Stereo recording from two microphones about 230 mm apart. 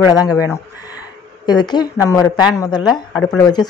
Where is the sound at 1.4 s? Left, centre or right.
Centre.